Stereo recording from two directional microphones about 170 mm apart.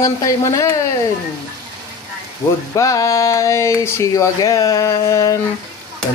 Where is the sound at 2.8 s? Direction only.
20° left (ahead or behind).